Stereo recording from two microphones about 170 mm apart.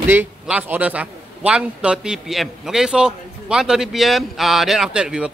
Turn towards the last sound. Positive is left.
turn(degrees=-5)  # may be behind; listen again after turning